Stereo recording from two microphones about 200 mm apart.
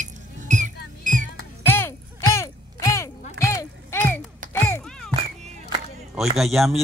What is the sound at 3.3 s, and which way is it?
Music, 15° left (ahead or behind).